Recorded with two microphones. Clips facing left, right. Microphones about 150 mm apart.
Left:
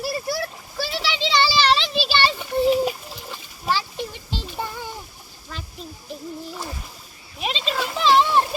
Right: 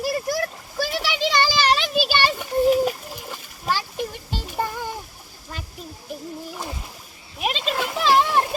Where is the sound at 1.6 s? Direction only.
10° right (ahead or behind).